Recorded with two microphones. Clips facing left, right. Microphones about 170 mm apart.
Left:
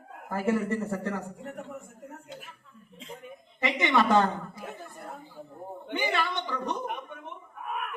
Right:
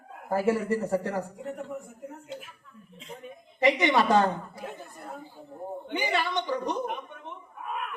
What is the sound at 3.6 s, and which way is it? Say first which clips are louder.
Speech: right 3 dB; 35° right (ahead or behind).